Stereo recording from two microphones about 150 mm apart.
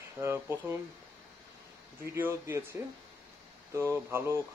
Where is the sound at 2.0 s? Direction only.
15° right (ahead or behind).